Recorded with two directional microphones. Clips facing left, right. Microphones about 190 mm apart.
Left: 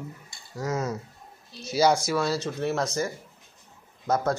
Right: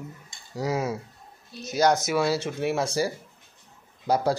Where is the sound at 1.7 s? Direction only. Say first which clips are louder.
Even; centre (ahead or behind).